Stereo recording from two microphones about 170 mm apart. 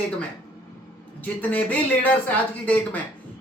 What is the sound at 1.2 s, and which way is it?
Speech, 10° left (ahead or behind).